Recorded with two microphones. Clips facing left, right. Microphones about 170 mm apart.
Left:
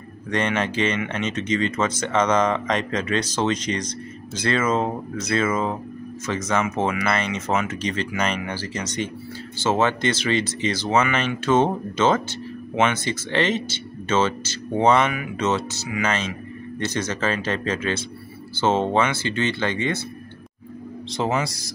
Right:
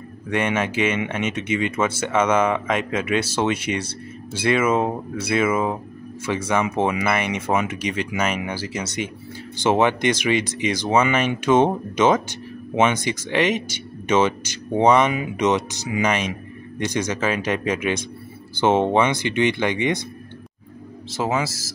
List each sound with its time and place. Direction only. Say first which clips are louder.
0.3 s speech: right 1 dB; 10° right (ahead or behind)
21.1 s speech: right 1 dB; 5° right (ahead or behind)